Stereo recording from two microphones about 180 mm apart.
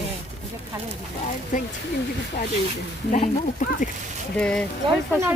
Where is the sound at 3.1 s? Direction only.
40° left (ahead or behind).